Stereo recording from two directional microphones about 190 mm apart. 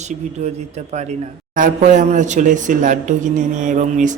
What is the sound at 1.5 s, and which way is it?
Speech, 45° right (ahead or behind).